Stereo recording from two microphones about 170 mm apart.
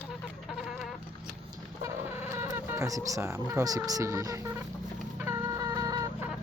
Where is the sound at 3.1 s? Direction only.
20° right (ahead or behind).